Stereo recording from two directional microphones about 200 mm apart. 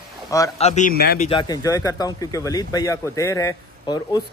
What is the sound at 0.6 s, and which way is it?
Speech, 35° left (ahead or behind).